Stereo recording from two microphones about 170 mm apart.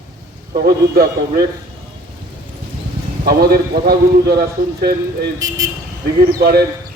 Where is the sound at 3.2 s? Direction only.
65° right (ahead or behind).